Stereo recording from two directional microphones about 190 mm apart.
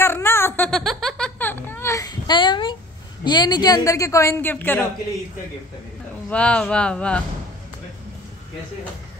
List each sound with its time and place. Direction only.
0.0 s giggle: 10° left (ahead or behind)
3.3 s a woman's voice: 25° left (ahead or behind)
6.2 s speech: 5° left (ahead or behind)